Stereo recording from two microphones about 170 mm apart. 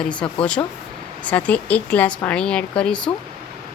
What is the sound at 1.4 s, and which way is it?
A woman's voice, 10° left (ahead or behind).